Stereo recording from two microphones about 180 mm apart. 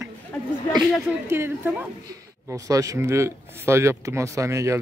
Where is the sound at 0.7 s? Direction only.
Centre (ahead or behind).